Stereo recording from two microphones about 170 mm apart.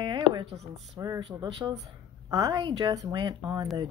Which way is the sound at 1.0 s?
25° right (ahead or behind).